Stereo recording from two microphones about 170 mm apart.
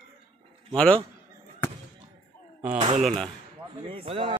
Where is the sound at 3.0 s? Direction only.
5° left (ahead or behind).